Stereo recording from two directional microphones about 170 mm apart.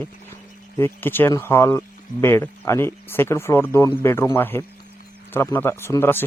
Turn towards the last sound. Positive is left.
turn(degrees=15)  # may be behind; listen again after turning